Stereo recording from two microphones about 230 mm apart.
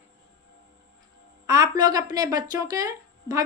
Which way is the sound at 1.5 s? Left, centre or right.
Centre.